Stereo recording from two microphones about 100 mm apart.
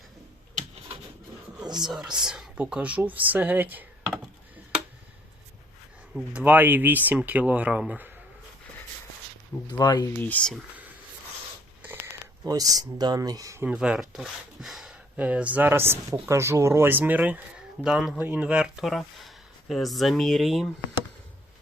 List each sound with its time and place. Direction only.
1.8 s speech: 5° right (ahead or behind)
6.3 s speech: 15° right (ahead or behind)
9.7 s speech: 40° left (ahead or behind)
10.2 s speech: 15° left (ahead or behind)
12.5 s speech: 35° right (ahead or behind)
13.7 s speech: 10° right (ahead or behind)
17.8 s speech: 5° right (ahead or behind)
18.2 s speech: 15° right (ahead or behind); by 20.7 s centre (ahead or behind)